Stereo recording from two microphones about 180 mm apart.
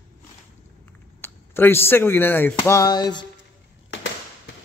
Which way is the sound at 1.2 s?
10° left (ahead or behind).